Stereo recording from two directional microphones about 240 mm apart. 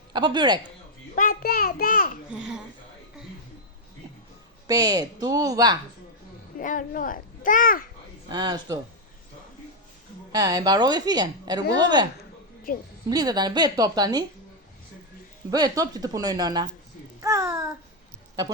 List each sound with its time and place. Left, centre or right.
0.1 s a woman's voice: centre
1.1 s a child's voice: left
2.3 s speech: centre
4.6 s a woman's voice: centre
6.6 s a child's voice: left
8.3 s a woman's voice: centre
10.3 s a woman's voice: centre
12.7 s a child's voice: left
13.1 s a woman's voice: centre
15.4 s a woman's voice: centre
17.2 s babbling: centre